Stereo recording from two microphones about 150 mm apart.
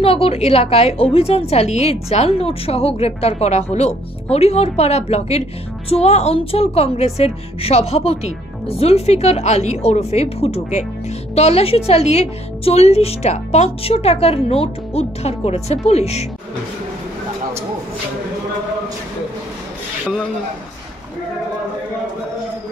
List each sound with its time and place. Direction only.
0.0 s a woman's voice: 40° left (ahead or behind)